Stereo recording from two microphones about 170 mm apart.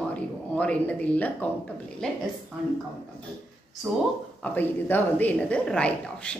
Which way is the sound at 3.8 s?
10° right (ahead or behind).